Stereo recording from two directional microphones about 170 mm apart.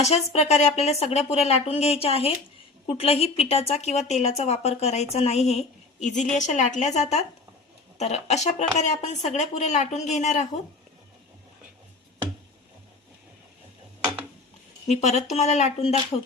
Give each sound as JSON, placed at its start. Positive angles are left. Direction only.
{"t": 0.0, "sound": "a woman's voice", "side_deg": 40}
{"t": 14.8, "sound": "a woman's voice", "side_deg": 40}